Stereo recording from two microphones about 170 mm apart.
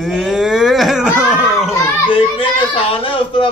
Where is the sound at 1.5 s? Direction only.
5° right (ahead or behind).